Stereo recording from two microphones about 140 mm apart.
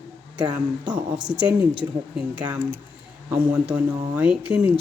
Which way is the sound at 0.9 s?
30° right (ahead or behind).